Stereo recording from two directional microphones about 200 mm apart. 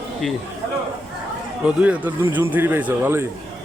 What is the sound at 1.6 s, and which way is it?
A man's voice, 5° right (ahead or behind).